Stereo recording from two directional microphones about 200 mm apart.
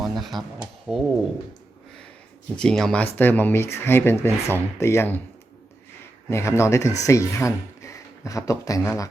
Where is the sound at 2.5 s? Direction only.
5° left (ahead or behind).